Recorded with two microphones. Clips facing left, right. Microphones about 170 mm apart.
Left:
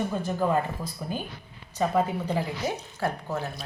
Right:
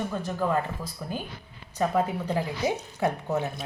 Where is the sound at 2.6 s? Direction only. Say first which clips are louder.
Right 3 dB; 20° right (ahead or behind).